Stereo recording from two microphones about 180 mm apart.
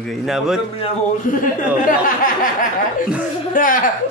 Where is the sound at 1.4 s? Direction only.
50° left (ahead or behind).